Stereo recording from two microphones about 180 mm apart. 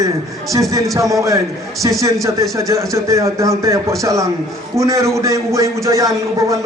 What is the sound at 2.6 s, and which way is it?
A man's voice, 15° right (ahead or behind).